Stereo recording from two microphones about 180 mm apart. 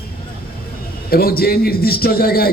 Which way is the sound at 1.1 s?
55° left (ahead or behind).